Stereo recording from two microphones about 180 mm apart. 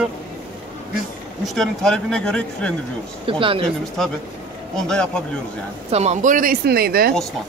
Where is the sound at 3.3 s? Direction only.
30° right (ahead or behind).